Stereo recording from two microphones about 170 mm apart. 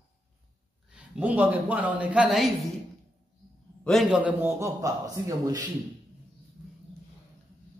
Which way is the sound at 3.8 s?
5° right (ahead or behind).